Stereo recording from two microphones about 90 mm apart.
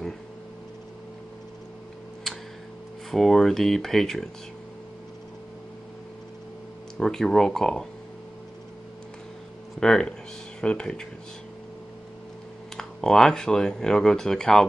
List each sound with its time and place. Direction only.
3.1 s speech: centre (ahead or behind)
7.0 s speech: 5° left (ahead or behind)
9.8 s speech: 5° left (ahead or behind)
12.7 s speech: 5° left (ahead or behind)